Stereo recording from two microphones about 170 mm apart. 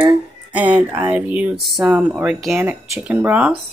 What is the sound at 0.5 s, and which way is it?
Speech, 10° right (ahead or behind).